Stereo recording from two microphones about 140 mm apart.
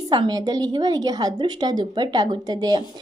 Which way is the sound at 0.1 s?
30° right (ahead or behind).